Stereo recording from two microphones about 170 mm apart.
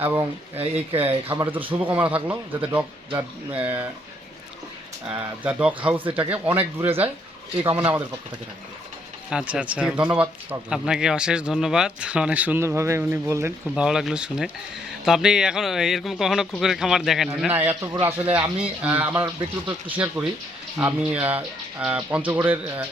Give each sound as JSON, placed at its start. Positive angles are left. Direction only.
{"t": 0.0, "sound": "speech", "side_deg": -15}
{"t": 0.5, "sound": "speech", "side_deg": -35}
{"t": 1.3, "sound": "speech", "side_deg": -10}
{"t": 5.0, "sound": "speech", "side_deg": -10}
{"t": 9.3, "sound": "speech", "side_deg": -5}
{"t": 13.8, "sound": "speech", "side_deg": -5}